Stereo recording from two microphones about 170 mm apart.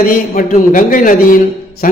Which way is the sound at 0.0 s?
55° left (ahead or behind).